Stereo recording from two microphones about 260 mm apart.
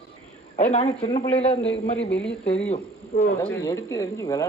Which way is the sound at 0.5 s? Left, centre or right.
Left.